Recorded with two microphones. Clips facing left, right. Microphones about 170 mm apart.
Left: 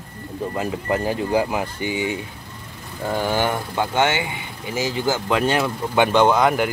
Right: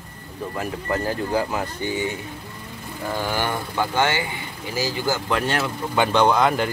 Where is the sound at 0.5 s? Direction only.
20° left (ahead or behind).